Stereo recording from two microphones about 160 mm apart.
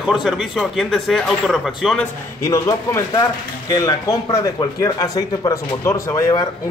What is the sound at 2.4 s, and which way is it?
Speech, 20° left (ahead or behind).